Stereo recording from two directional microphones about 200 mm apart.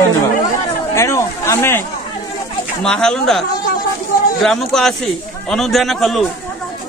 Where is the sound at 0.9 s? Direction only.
15° left (ahead or behind).